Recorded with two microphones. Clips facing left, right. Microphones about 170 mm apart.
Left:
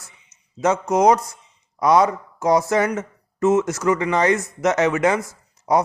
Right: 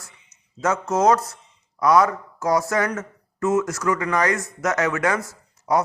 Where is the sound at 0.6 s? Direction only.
20° left (ahead or behind).